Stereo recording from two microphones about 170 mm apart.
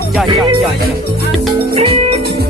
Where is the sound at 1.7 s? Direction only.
35° right (ahead or behind).